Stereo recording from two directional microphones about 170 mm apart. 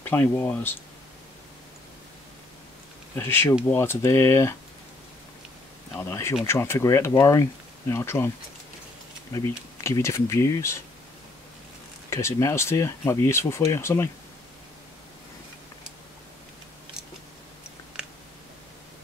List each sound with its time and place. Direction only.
0.0 s speech: 10° left (ahead or behind)
3.2 s speech: 10° left (ahead or behind)
5.9 s speech: 15° left (ahead or behind)
9.8 s speech: 15° left (ahead or behind)
12.1 s speech: 15° left (ahead or behind)